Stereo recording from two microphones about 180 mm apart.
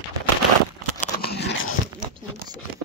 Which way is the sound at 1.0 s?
60° left (ahead or behind).